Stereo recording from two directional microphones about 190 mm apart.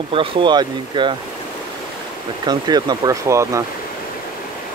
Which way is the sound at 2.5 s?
20° right (ahead or behind).